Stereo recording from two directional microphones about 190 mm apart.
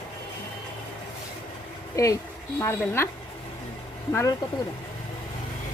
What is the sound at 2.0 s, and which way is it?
Speech, 20° left (ahead or behind).